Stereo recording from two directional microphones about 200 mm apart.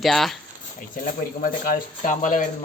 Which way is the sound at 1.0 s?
45° left (ahead or behind).